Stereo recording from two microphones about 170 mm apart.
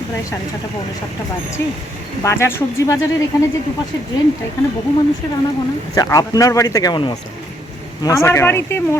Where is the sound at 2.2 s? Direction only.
15° left (ahead or behind).